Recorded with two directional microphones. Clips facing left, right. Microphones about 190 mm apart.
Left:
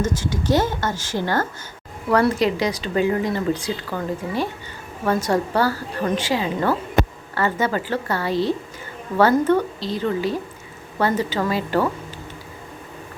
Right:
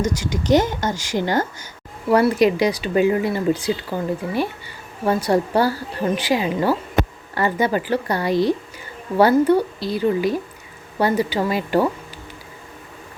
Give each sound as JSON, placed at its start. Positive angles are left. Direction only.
{"t": 0.0, "sound": "a woman's voice", "side_deg": -15}